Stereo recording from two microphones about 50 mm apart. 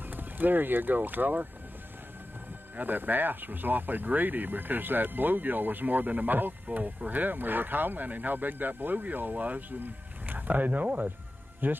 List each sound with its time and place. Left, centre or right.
0.1 s speech: right
2.8 s speech: right